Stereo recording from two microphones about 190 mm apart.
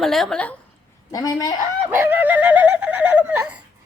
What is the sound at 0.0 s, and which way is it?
Speech, centre (ahead or behind).